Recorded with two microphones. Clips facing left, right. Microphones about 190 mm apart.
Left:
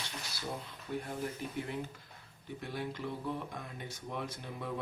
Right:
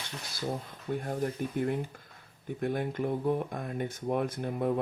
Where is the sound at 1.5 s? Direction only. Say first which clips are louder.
Right 8 dB; 55° right (ahead or behind).